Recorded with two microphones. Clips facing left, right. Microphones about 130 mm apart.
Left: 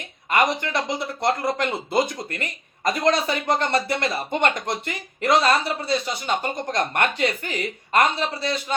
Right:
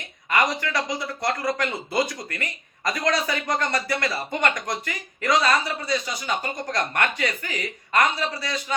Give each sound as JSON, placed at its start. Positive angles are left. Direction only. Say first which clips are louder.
{"t": 0.5, "sound": "speech", "louder": "left 1 dB", "side_deg": 25}